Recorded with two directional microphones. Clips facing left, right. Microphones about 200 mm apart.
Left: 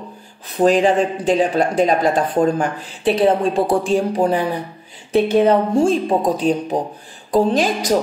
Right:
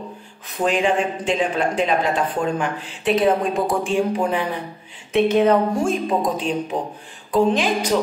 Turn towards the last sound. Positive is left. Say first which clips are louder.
# left 2 dB
turn(degrees=40)  # may be behind; listen again after turning